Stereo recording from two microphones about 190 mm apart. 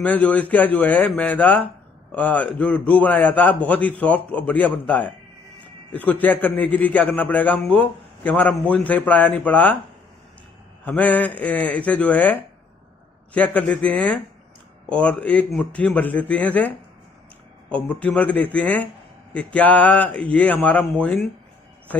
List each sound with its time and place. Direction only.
0.0 s a man's voice: 10° left (ahead or behind)
10.9 s a man's voice: 10° left (ahead or behind)